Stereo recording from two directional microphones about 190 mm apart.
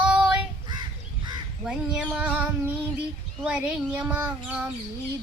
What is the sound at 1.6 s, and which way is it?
Speech, 5° right (ahead or behind).